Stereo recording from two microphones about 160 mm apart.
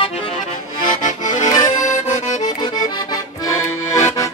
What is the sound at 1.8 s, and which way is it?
Accordion, 50° left (ahead or behind).